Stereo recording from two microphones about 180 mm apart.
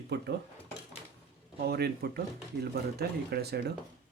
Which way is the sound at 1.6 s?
60° right (ahead or behind).